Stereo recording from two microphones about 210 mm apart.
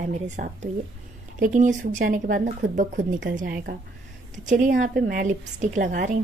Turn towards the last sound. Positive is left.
turn(degrees=-40)  # may be behind; listen again after turning